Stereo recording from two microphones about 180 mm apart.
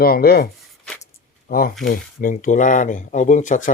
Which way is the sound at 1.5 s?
55° left (ahead or behind).